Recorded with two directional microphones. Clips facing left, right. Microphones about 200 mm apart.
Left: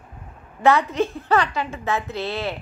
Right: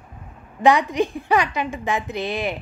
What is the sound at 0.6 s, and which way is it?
A woman's voice, 15° right (ahead or behind).